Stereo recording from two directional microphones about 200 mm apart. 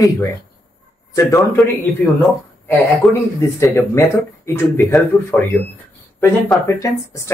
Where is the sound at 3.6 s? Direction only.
15° left (ahead or behind).